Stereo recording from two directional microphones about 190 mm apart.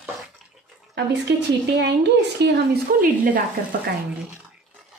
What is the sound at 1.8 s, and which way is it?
Speech, 60° right (ahead or behind).